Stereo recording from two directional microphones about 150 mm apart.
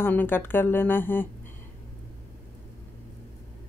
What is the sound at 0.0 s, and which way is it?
Speech, 15° left (ahead or behind).